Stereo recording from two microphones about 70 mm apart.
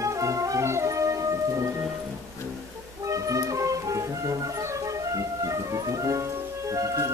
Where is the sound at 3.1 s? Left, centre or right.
Right.